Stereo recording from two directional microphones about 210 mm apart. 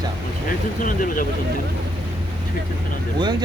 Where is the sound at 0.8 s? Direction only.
40° left (ahead or behind).